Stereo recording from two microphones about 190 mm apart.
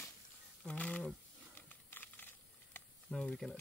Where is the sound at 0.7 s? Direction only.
5° left (ahead or behind).